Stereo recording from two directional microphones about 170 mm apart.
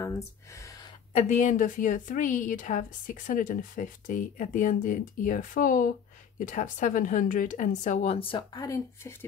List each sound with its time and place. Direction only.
1.1 s a woman's voice: 45° left (ahead or behind); by 9.1 s 20° left (ahead or behind)